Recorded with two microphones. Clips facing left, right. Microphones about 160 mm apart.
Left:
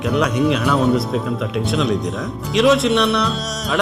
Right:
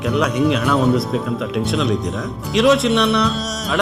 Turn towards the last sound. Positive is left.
turn(degrees=0)  # may be behind; listen again after turning